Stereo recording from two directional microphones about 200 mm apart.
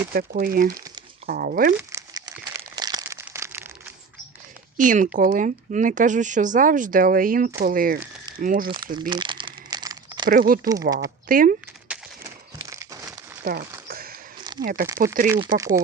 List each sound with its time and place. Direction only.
0.1 s speech: 50° right (ahead or behind)
1.7 s crumpling: 15° right (ahead or behind)
4.8 s speech: 40° right (ahead or behind)
9.0 s crumpling: 25° right (ahead or behind)
10.2 s speech: 45° right (ahead or behind)
11.9 s a sound: 15° right (ahead or behind)
13.4 s speech: 50° right (ahead or behind)
13.8 s a sound: 45° right (ahead or behind)
14.6 s speech: 45° right (ahead or behind)
15.5 s speech: 15° right (ahead or behind)